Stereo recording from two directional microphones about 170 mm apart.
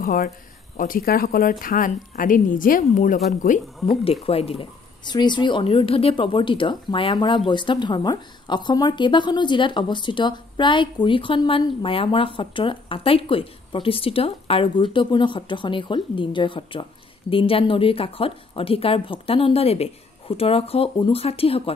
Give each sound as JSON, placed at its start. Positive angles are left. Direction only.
{"t": 0.0, "sound": "speech", "side_deg": 55}
{"t": 3.9, "sound": "speech", "side_deg": 35}